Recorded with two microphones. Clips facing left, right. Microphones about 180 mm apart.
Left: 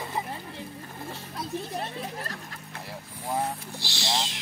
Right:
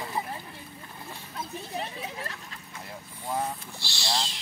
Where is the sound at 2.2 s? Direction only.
60° left (ahead or behind).